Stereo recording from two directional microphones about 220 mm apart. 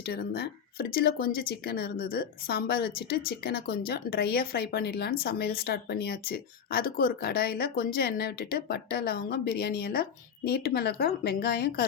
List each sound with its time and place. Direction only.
0.0 s speech: 45° left (ahead or behind)